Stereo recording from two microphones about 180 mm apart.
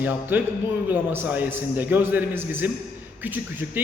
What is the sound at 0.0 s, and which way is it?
A man's voice, 10° right (ahead or behind).